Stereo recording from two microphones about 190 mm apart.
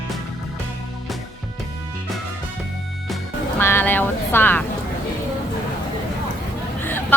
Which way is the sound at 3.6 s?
10° left (ahead or behind).